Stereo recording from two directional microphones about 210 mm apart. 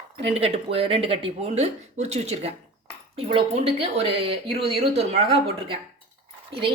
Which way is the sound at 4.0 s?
25° right (ahead or behind).